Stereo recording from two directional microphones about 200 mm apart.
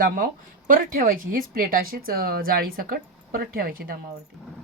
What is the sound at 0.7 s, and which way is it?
Speech, 45° right (ahead or behind).